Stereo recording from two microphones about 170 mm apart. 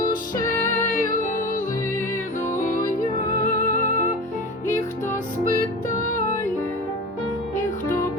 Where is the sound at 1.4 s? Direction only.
50° left (ahead or behind).